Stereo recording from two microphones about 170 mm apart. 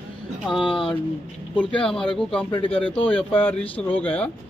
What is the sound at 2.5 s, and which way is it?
Speech, 30° left (ahead or behind).